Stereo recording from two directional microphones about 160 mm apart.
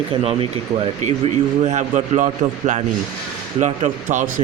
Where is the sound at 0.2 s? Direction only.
40° right (ahead or behind).